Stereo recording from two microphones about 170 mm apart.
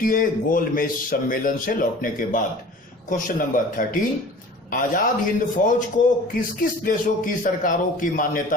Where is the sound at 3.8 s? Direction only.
50° left (ahead or behind).